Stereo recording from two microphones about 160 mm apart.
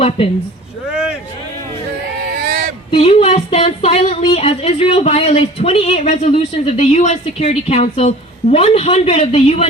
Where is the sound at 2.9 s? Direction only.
40° left (ahead or behind).